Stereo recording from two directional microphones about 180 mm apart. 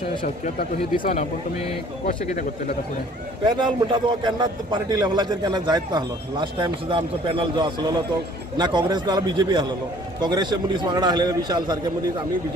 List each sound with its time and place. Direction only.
0.2 s speech: 50° left (ahead or behind)
3.4 s a man's voice: 25° right (ahead or behind)